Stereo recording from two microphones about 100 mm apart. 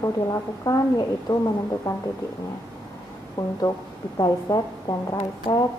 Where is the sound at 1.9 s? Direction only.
30° left (ahead or behind).